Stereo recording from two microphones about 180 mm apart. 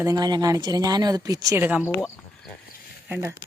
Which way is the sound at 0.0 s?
20° right (ahead or behind).